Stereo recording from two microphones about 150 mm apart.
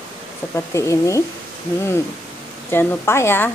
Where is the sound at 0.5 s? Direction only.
20° left (ahead or behind).